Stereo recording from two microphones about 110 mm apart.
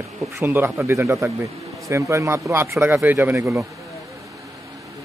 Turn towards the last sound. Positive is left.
turn(degrees=-25)  # may be behind; listen again after turning